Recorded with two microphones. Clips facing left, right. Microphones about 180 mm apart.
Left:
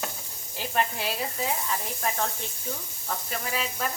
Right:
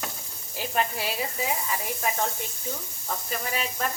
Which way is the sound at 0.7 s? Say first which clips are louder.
Even; 5° right (ahead or behind).